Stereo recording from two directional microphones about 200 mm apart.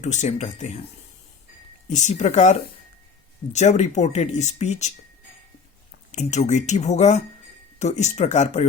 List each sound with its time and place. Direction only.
0.0 s speech: 35° left (ahead or behind)
1.9 s speech: 35° left (ahead or behind)
6.1 s speech: 35° left (ahead or behind)